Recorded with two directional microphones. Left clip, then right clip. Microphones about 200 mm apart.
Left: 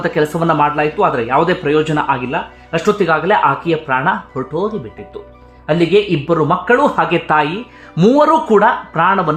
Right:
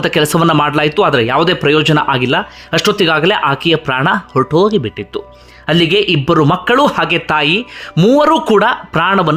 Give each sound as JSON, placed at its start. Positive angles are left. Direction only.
{"t": 0.0, "sound": "speech", "side_deg": -25}
{"t": 6.9, "sound": "speech", "side_deg": -15}
{"t": 8.2, "sound": "speech", "side_deg": -25}